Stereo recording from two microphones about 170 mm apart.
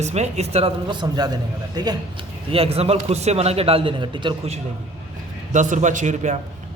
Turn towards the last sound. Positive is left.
turn(degrees=-45)  # may be behind; listen again after turning